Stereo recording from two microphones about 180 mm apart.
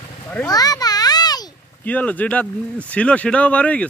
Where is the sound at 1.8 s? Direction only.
10° left (ahead or behind).